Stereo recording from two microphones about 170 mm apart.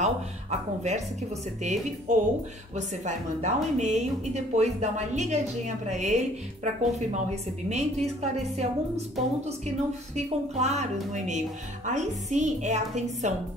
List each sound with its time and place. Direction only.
0.0 s a woman's voice: 45° right (ahead or behind)
10.1 s speech: 40° right (ahead or behind)